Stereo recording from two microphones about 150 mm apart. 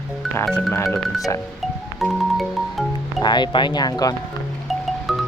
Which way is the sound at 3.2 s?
30° left (ahead or behind).